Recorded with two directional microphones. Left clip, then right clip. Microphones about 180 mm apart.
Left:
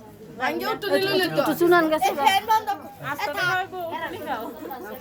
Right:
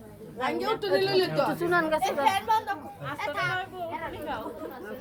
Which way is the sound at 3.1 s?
50° left (ahead or behind).